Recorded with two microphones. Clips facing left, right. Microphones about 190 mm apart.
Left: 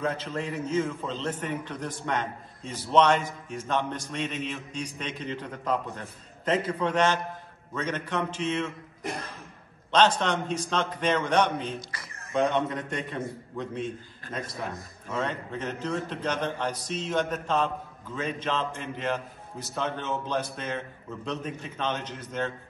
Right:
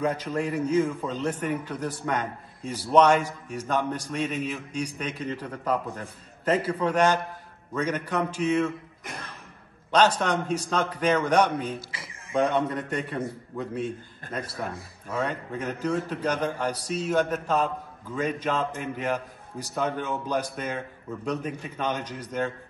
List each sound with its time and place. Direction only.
0.0 s a man's voice: 10° right (ahead or behind)
9.8 s a man's voice: 10° right (ahead or behind)
15.0 s a man's voice: 10° right (ahead or behind)